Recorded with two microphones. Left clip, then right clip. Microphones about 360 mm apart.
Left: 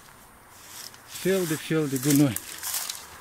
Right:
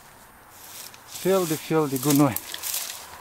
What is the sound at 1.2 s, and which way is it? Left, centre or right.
Speech, right.